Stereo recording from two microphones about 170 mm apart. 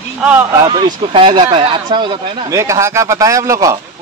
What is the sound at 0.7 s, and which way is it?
Speech, 30° right (ahead or behind).